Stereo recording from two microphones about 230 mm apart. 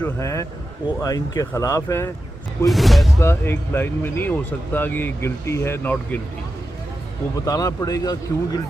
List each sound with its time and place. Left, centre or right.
0.0 s speech: centre
2.6 s speech: centre
7.3 s speech: centre